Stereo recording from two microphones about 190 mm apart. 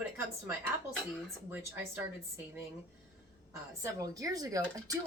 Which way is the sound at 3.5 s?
15° right (ahead or behind).